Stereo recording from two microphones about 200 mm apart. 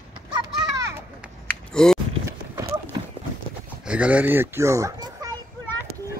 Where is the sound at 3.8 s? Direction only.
5° right (ahead or behind).